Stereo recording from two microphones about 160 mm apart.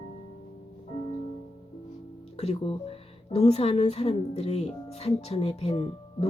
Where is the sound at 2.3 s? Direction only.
35° left (ahead or behind).